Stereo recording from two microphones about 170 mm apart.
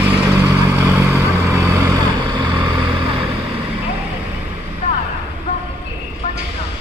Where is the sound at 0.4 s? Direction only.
10° right (ahead or behind).